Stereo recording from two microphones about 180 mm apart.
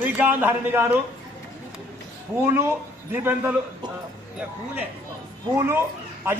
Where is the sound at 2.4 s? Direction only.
15° right (ahead or behind).